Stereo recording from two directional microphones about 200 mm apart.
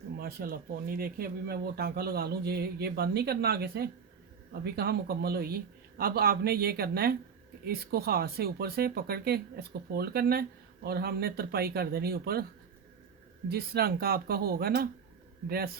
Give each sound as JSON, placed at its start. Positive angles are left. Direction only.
{"t": 0.2, "sound": "speech", "side_deg": -50}
{"t": 13.5, "sound": "speech", "side_deg": -50}